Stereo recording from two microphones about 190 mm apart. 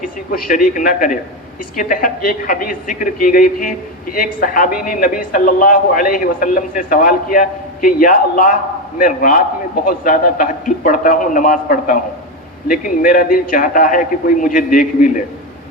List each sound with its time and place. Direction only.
0.0 s a man's voice: 45° left (ahead or behind)